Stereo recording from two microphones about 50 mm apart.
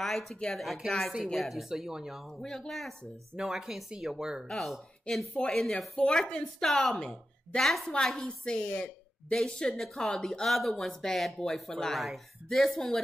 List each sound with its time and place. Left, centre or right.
0.0 s a woman's voice: centre
2.2 s speech: centre
3.3 s a woman's voice: centre
4.5 s a woman's voice: centre
7.0 s speech: centre
7.6 s a woman's voice: centre
12.0 s a woman's voice: centre